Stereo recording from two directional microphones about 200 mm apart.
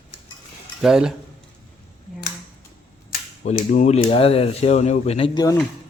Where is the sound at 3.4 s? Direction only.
40° left (ahead or behind).